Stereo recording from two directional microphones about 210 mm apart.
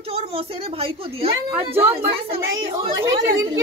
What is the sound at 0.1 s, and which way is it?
A woman's voice, 25° right (ahead or behind).